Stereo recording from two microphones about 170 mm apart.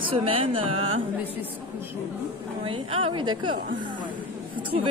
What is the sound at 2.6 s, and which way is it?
Speech, 30° right (ahead or behind).